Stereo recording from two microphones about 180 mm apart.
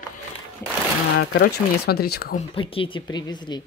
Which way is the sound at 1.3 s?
65° left (ahead or behind).